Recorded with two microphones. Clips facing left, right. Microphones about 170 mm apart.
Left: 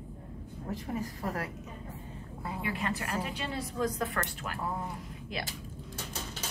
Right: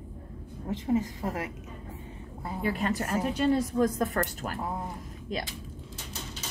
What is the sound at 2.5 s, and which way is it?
A woman's voice, 40° right (ahead or behind).